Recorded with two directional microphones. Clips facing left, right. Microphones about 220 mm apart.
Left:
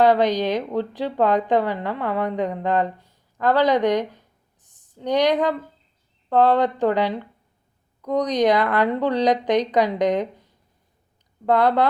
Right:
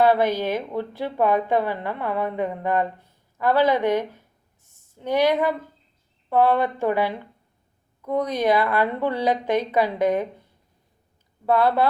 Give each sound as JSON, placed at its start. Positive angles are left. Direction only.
{"t": 0.0, "sound": "a woman's voice", "side_deg": 15}
{"t": 4.6, "sound": "a sound", "side_deg": 15}
{"t": 6.3, "sound": "a woman's voice", "side_deg": 15}
{"t": 11.4, "sound": "a woman's voice", "side_deg": 15}